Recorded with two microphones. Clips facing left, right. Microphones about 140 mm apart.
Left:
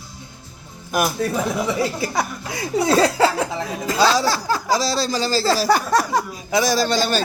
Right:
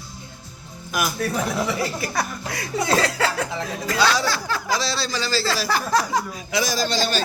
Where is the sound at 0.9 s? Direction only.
45° left (ahead or behind).